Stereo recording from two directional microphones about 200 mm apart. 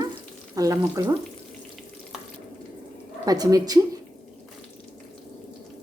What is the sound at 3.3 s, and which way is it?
Speech, 20° right (ahead or behind).